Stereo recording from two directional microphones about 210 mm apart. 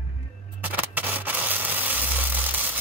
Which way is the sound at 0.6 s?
10° right (ahead or behind).